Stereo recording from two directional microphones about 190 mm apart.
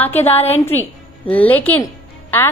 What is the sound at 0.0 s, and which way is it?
A woman's voice, 10° left (ahead or behind).